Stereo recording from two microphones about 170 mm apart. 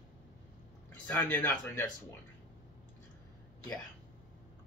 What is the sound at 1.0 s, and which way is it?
Speech, 10° left (ahead or behind).